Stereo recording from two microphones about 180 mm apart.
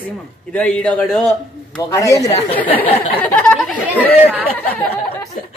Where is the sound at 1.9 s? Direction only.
15° left (ahead or behind); by 4.4 s 10° right (ahead or behind).